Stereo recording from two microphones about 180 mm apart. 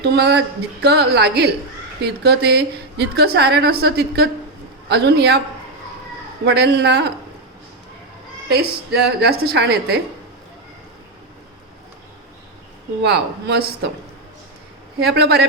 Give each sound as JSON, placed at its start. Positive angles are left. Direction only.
{"t": 0.0, "sound": "a woman's voice", "side_deg": -65}
{"t": 6.4, "sound": "a woman's voice", "side_deg": -65}
{"t": 8.4, "sound": "a woman's voice", "side_deg": -65}
{"t": 13.0, "sound": "a woman's voice", "side_deg": -65}
{"t": 15.0, "sound": "a woman's voice", "side_deg": -65}